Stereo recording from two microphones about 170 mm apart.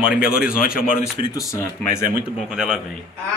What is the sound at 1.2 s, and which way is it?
Speech, 20° left (ahead or behind).